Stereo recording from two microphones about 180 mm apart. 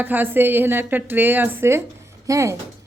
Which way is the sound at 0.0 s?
10° right (ahead or behind).